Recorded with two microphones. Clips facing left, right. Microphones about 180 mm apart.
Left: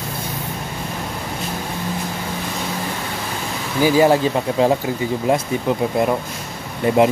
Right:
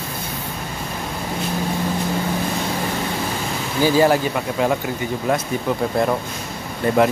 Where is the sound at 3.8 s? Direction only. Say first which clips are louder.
Left 2 dB; 15° left (ahead or behind).